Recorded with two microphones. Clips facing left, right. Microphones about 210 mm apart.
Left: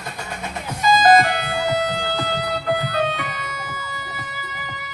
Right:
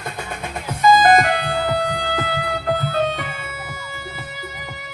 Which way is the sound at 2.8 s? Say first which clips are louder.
Right 2 dB; 50° right (ahead or behind).